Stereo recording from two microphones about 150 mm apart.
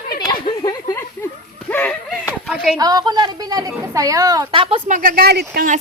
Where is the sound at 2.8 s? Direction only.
25° right (ahead or behind).